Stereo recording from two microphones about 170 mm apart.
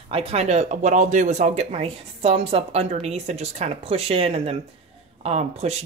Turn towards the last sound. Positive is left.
turn(degrees=-40)  # may be behind; listen again after turning